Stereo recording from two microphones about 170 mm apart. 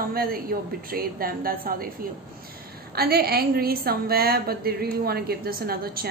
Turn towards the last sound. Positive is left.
turn(degrees=-65)  # may be behind; listen again after turning